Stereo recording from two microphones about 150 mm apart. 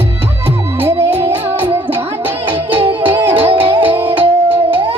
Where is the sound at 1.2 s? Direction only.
40° right (ahead or behind).